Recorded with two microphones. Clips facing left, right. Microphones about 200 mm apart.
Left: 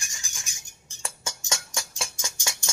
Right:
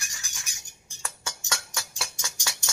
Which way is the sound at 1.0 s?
25° left (ahead or behind).